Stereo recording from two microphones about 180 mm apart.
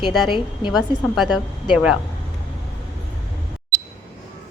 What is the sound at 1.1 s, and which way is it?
Speech, centre (ahead or behind).